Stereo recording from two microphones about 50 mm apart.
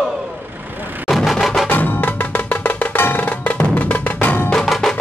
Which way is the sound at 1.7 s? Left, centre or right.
Left.